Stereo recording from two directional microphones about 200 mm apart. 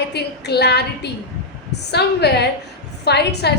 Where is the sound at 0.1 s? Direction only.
55° left (ahead or behind).